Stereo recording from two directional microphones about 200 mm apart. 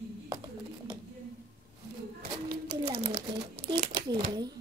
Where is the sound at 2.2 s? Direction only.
50° right (ahead or behind).